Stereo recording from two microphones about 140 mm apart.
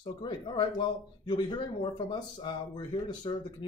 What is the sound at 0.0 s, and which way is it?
Speech, 35° left (ahead or behind).